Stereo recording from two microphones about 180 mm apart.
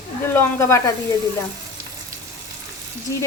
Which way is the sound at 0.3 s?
15° left (ahead or behind).